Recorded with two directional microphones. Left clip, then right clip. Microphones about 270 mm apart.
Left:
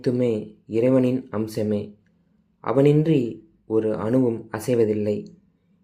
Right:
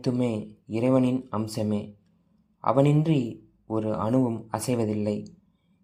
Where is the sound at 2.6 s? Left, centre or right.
Centre.